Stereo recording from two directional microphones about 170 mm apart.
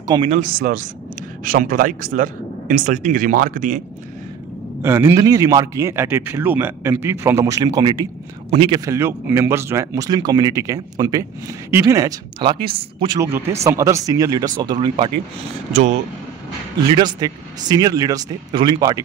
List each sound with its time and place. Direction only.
0.0 s speech: 25° right (ahead or behind)
0.3 s speech: 50° right (ahead or behind)
4.8 s a man's voice: 15° right (ahead or behind); by 8.8 s 30° right (ahead or behind)
8.8 s speech: 15° right (ahead or behind)
13.2 s speech: 15° right (ahead or behind)
15.7 s speech: 40° right (ahead or behind)
16.9 s speech: 25° right (ahead or behind)